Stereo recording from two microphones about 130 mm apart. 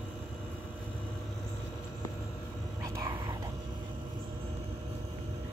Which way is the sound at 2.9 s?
25° right (ahead or behind).